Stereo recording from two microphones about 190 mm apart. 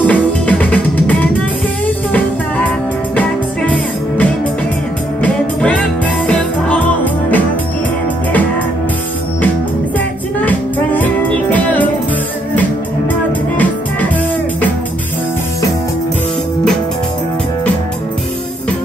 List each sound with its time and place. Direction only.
0.0 s music: 5° left (ahead or behind)
3.2 s music: 5° left (ahead or behind)
9.9 s music: 10° left (ahead or behind)